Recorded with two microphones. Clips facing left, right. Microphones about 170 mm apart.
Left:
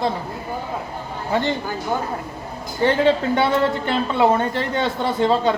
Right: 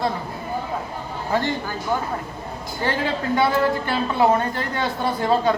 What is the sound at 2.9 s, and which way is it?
A woman's voice, 25° left (ahead or behind).